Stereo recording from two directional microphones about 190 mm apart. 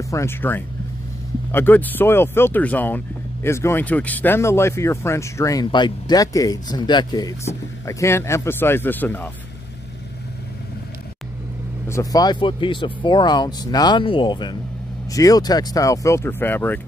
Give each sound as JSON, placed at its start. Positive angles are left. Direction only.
{"t": 0.1, "sound": "speech", "side_deg": 15}
{"t": 11.9, "sound": "speech", "side_deg": 20}